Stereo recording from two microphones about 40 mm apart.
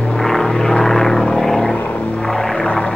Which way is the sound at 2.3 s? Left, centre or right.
Centre.